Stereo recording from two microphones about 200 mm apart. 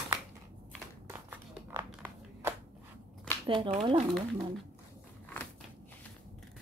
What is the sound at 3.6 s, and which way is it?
Speech, 30° right (ahead or behind).